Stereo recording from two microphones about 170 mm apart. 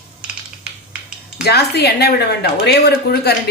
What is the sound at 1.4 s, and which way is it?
Speech, 70° left (ahead or behind).